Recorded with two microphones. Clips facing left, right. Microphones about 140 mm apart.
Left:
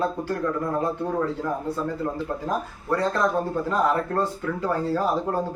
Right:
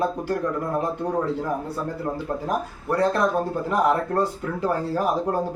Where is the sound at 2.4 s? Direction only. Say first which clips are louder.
Even; 15° right (ahead or behind).